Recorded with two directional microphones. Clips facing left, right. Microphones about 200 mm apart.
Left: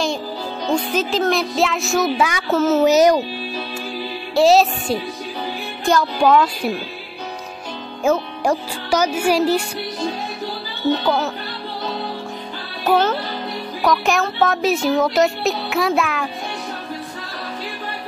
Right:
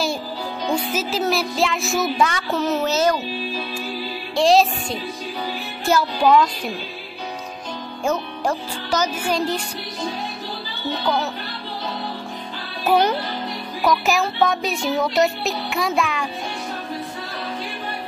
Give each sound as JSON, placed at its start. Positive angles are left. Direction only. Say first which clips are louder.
{"t": 0.7, "sound": "music", "louder": "left 4 dB", "side_deg": -5}
{"t": 2.9, "sound": "speech", "louder": "left 7 dB", "side_deg": 15}
{"t": 4.4, "sound": "music", "louder": "left 2 dB", "side_deg": 5}
{"t": 8.0, "sound": "speech", "louder": "left 4 dB", "side_deg": 10}
{"t": 12.8, "sound": "music", "louder": "left 1 dB", "side_deg": -10}